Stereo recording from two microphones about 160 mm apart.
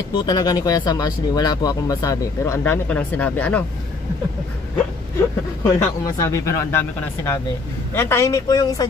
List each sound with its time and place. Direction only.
0.1 s speech: 25° left (ahead or behind); by 3.6 s 10° left (ahead or behind)
5.6 s speech: 20° left (ahead or behind)